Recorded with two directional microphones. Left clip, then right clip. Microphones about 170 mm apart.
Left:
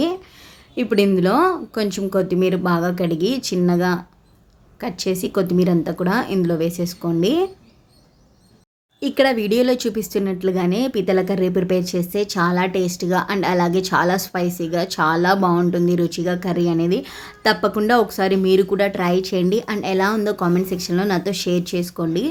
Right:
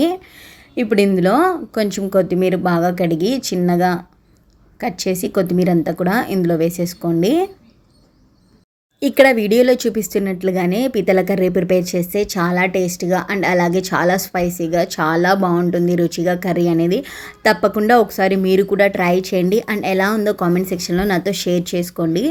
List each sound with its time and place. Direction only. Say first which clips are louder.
0.8 s speech: right 2 dB; 20° right (ahead or behind)
9.0 s speech: right 6 dB; 25° right (ahead or behind)